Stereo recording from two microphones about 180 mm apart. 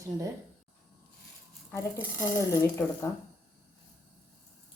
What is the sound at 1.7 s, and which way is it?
Speech, 15° left (ahead or behind).